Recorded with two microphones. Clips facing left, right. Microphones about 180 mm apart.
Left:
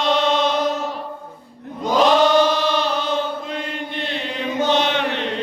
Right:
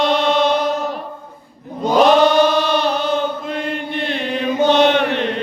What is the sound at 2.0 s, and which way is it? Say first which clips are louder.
Chant: right 3 dB; 55° right (ahead or behind).